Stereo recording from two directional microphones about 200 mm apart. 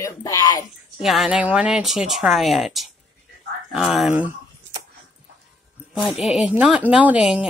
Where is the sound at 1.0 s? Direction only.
Centre (ahead or behind).